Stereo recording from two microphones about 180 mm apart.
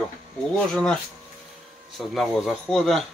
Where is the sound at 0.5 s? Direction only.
5° left (ahead or behind).